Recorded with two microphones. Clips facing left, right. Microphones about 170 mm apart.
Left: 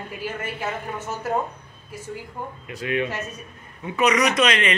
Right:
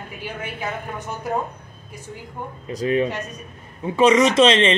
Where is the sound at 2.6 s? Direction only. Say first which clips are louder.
Right 6 dB; 35° right (ahead or behind).